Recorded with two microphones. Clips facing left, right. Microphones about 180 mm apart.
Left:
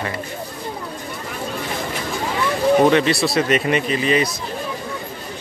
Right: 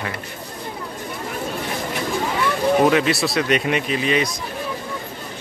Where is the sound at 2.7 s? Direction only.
5° right (ahead or behind).